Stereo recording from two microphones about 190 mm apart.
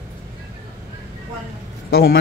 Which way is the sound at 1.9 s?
55° left (ahead or behind).